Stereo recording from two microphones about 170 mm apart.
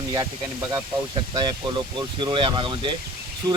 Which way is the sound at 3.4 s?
20° right (ahead or behind).